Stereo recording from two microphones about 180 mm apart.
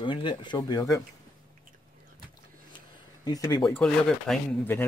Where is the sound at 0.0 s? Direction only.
25° left (ahead or behind).